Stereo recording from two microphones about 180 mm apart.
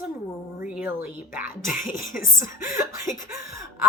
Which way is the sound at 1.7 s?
50° left (ahead or behind).